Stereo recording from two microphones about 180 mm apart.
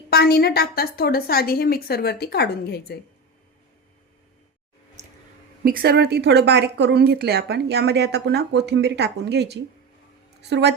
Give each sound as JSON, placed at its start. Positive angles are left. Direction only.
{"t": 0.1, "sound": "a woman's voice", "side_deg": 60}
{"t": 5.6, "sound": "a woman's voice", "side_deg": -55}